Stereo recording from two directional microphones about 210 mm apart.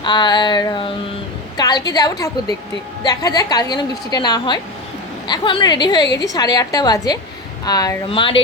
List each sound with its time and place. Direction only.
0.0 s a woman's voice: 20° left (ahead or behind)